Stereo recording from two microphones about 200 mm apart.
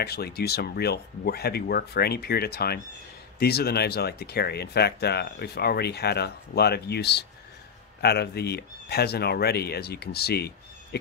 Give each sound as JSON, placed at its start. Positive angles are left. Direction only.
{"t": 0.0, "sound": "speech", "side_deg": 50}